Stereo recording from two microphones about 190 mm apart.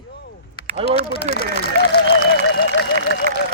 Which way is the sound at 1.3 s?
50° left (ahead or behind).